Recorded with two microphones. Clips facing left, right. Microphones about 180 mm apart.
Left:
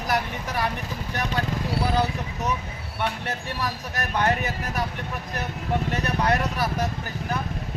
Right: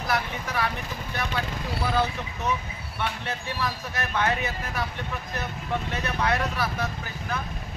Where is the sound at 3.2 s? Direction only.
40° left (ahead or behind).